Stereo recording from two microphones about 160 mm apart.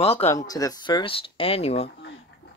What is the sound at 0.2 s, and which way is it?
Speech, 20° left (ahead or behind).